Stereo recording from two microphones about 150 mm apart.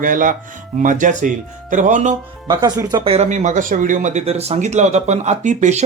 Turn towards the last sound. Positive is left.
turn(degrees=-50)  # may be behind; listen again after turning